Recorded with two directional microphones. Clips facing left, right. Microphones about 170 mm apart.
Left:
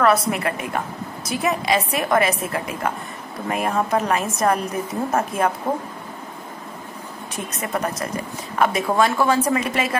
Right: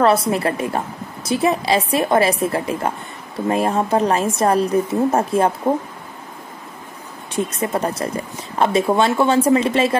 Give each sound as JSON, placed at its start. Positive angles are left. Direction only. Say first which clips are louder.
{"t": 0.0, "sound": "a woman's voice", "louder": "right 3 dB", "side_deg": -30}
{"t": 7.3, "sound": "speech", "louder": "right 6 dB", "side_deg": -30}